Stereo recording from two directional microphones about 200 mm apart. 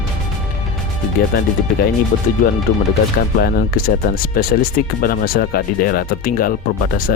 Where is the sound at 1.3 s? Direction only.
50° left (ahead or behind).